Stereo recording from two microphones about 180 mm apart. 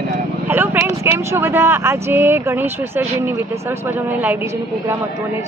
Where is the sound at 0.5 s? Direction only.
15° right (ahead or behind).